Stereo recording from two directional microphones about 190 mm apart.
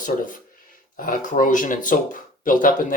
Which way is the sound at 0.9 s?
45° left (ahead or behind).